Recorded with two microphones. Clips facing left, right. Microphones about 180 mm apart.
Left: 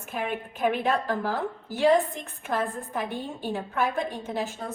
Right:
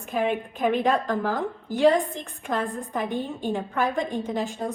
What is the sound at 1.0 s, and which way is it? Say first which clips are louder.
A woman's voice: right 2 dB; 15° right (ahead or behind).